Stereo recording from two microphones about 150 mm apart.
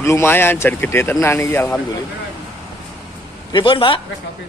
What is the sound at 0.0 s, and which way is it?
A man's voice, 15° left (ahead or behind).